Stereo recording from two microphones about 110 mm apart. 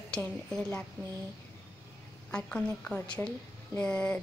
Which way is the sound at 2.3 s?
10° left (ahead or behind).